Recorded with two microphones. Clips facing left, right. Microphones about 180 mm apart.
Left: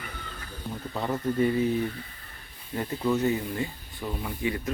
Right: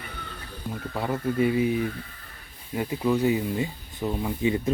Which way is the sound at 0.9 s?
10° right (ahead or behind).